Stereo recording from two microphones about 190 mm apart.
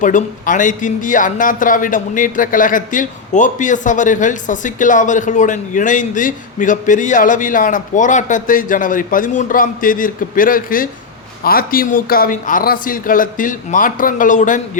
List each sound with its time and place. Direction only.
0.0 s a man's voice: 45° left (ahead or behind)